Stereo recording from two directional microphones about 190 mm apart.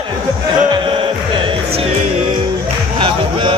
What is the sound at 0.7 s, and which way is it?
Music, 25° right (ahead or behind).